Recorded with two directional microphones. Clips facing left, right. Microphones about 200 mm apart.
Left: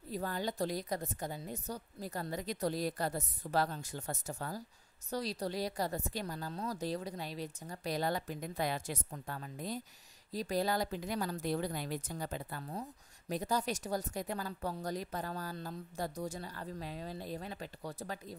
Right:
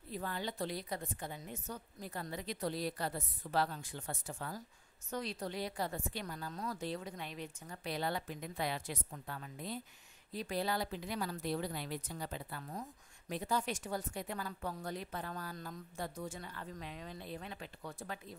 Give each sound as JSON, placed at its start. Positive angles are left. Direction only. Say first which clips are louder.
{"t": 0.1, "sound": "speech", "louder": "left 4 dB", "side_deg": 40}